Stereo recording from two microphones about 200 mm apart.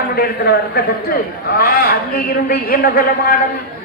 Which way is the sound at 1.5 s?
50° left (ahead or behind).